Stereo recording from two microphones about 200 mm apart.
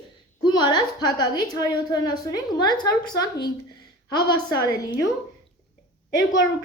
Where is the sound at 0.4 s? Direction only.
20° left (ahead or behind).